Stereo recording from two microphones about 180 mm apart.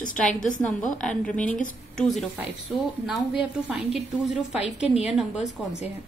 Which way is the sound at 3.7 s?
Centre (ahead or behind).